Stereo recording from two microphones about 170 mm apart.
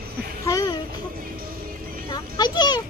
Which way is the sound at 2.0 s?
25° left (ahead or behind).